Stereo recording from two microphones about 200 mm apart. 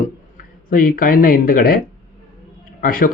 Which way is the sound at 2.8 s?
45° left (ahead or behind).